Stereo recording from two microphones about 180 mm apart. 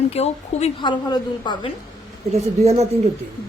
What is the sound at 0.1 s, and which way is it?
Speech, 35° left (ahead or behind).